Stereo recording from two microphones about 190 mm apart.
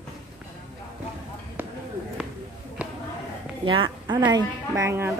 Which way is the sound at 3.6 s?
25° right (ahead or behind).